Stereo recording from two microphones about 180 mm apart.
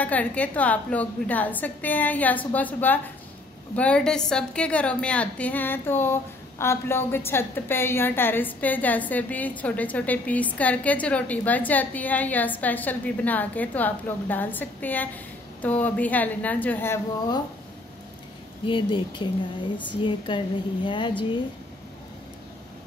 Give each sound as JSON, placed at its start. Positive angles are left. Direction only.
{"t": 0.0, "sound": "a woman's voice", "side_deg": 10}
{"t": 18.7, "sound": "speech", "side_deg": 25}